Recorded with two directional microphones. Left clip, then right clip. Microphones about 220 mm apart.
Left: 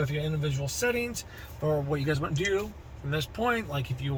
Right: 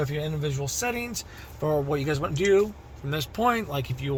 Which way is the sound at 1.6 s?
55° right (ahead or behind).